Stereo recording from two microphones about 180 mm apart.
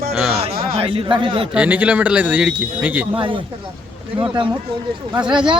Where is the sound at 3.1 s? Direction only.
30° right (ahead or behind).